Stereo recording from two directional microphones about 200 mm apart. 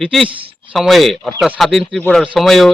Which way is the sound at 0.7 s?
Centre (ahead or behind).